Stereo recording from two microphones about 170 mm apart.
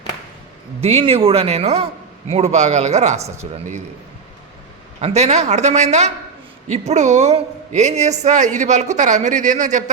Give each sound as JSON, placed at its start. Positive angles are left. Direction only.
{"t": 0.8, "sound": "speech", "side_deg": -35}
{"t": 4.9, "sound": "speech", "side_deg": -40}